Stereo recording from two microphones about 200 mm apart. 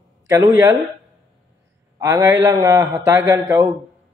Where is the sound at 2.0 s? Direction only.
15° right (ahead or behind).